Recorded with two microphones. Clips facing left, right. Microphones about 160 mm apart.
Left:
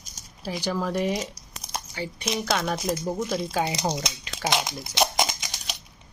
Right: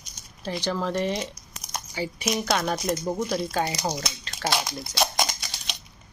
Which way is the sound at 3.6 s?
20° left (ahead or behind).